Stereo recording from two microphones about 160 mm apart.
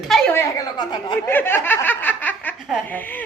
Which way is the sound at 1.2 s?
15° left (ahead or behind).